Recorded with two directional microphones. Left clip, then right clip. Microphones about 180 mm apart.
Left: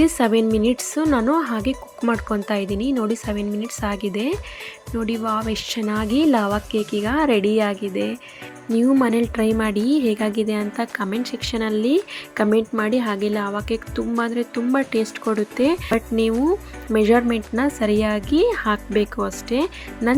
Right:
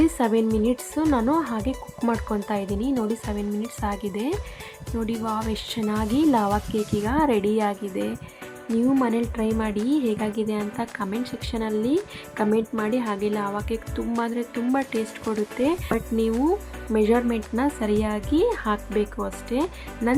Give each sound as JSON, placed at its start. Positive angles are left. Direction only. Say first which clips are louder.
{"t": 0.0, "sound": "a woman's voice", "louder": "left 4 dB", "side_deg": 15}